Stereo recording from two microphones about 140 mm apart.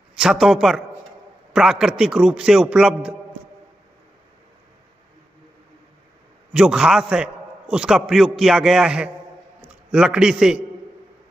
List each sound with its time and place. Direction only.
0.1 s a man's voice: 5° right (ahead or behind)
6.5 s a man's voice: 5° right (ahead or behind)